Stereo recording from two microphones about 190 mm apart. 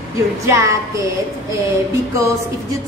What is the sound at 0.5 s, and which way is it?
Speech, 15° right (ahead or behind).